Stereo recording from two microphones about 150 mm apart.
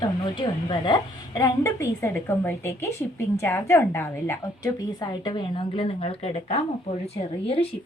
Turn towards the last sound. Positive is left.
turn(degrees=40)  # may be behind; listen again after turning